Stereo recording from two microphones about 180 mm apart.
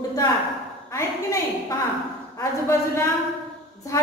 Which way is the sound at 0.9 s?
15° left (ahead or behind).